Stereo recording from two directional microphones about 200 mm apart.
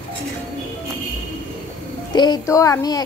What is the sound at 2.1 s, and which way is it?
Speech, 20° left (ahead or behind).